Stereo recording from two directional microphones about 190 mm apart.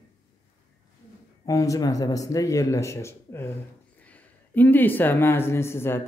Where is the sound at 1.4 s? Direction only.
15° left (ahead or behind).